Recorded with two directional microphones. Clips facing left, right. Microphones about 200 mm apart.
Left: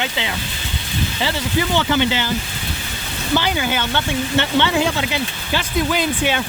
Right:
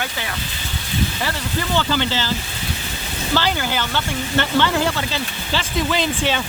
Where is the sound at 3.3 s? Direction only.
15° left (ahead or behind).